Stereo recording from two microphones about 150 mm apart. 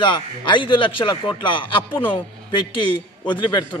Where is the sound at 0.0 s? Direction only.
35° left (ahead or behind).